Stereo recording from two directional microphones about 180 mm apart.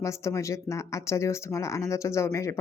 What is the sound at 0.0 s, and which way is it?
Speech, 15° left (ahead or behind).